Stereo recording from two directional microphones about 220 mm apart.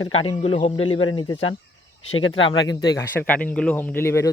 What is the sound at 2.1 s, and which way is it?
Speech, 65° left (ahead or behind).